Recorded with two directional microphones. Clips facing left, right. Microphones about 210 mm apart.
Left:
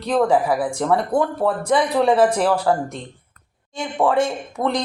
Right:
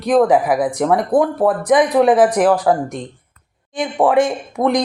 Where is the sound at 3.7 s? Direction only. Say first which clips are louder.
Right 4 dB; 15° right (ahead or behind).